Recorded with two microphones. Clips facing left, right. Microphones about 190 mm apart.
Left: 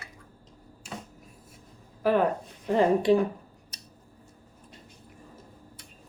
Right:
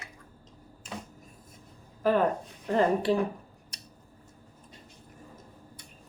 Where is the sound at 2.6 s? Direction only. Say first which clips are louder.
Left 2 dB; 10° left (ahead or behind).